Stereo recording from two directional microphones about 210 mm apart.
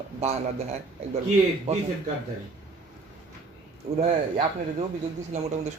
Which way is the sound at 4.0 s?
30° right (ahead or behind).